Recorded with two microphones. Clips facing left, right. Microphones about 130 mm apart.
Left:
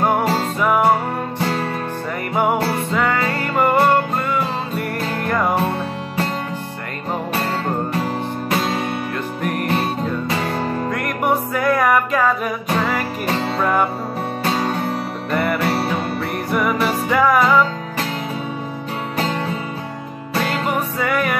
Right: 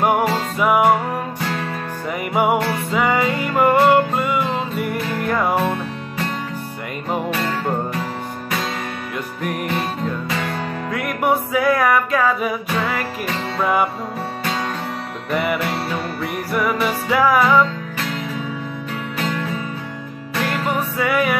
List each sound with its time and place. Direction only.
0.6 s music: 5° right (ahead or behind)
2.3 s music: 10° right (ahead or behind)
7.3 s music: 35° left (ahead or behind)
9.4 s music: centre (ahead or behind)
10.2 s music: 35° left (ahead or behind)
10.9 s music: centre (ahead or behind)
15.3 s music: 5° right (ahead or behind)
19.1 s music: 35° left (ahead or behind)
21.0 s music: centre (ahead or behind)